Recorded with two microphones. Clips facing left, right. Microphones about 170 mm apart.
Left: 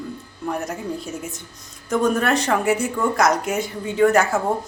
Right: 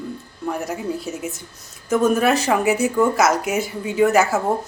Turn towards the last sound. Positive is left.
turn(degrees=-5)  # may be behind; listen again after turning